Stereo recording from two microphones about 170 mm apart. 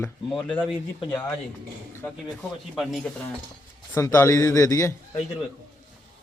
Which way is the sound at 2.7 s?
Centre (ahead or behind).